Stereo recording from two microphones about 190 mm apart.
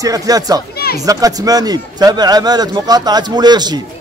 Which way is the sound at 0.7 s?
55° left (ahead or behind).